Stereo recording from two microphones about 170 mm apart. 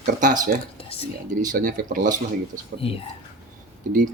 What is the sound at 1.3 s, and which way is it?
Speech, 50° right (ahead or behind).